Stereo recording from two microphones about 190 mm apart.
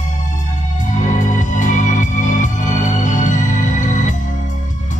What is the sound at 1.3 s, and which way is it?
Music, 40° left (ahead or behind).